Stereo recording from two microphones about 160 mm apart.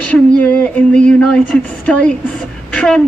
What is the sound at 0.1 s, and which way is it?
A woman's voice, 10° left (ahead or behind).